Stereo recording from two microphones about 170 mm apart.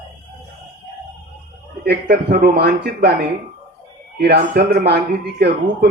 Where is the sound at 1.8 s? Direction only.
70° right (ahead or behind).